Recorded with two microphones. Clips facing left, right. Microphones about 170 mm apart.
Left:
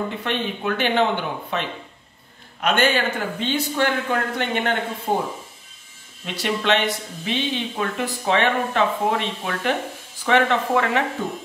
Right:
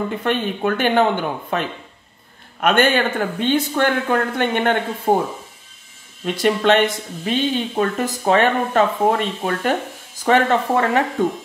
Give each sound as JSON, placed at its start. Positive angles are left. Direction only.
{"t": 0.2, "sound": "speech", "side_deg": -50}
{"t": 6.2, "sound": "speech", "side_deg": -50}